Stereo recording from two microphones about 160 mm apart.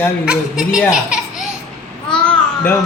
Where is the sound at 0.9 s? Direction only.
5° right (ahead or behind).